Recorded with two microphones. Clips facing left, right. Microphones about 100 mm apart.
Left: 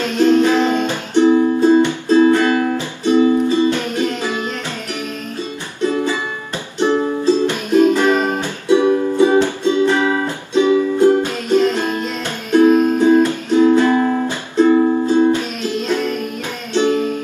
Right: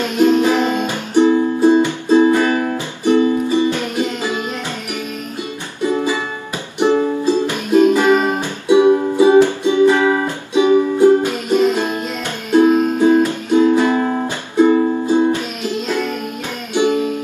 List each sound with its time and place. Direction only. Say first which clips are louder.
0.2 s music: left 1 dB; 15° right (ahead or behind)
5.8 s music: even; 15° right (ahead or behind)
16.8 s music: even; 15° right (ahead or behind)